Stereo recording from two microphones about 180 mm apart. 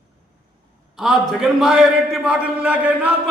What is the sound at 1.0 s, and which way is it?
A man's voice, centre (ahead or behind).